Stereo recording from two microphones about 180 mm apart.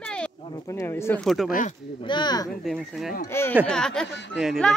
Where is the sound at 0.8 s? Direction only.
15° left (ahead or behind).